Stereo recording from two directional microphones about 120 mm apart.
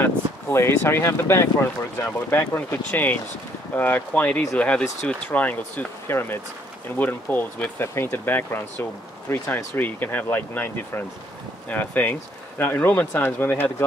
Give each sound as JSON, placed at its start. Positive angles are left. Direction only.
{"t": 0.0, "sound": "speech", "side_deg": 20}